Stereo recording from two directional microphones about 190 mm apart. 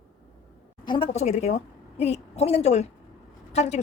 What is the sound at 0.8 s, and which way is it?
A woman's voice, 30° left (ahead or behind).